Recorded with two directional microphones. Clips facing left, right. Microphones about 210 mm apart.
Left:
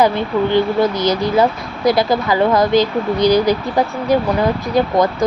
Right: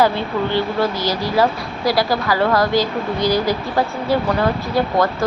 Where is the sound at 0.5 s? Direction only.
20° left (ahead or behind).